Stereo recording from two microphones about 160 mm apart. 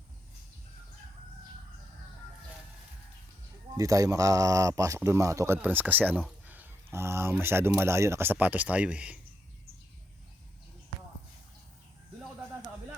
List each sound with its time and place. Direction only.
3.8 s speech: 20° right (ahead or behind)
6.4 s a sound: 10° right (ahead or behind)
7.7 s speech: 15° right (ahead or behind)